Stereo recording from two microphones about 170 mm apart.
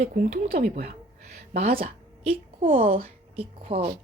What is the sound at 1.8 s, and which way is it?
A woman's voice, 35° right (ahead or behind).